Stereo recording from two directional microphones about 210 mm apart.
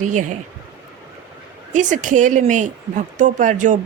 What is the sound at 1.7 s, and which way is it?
A woman's voice, 35° right (ahead or behind).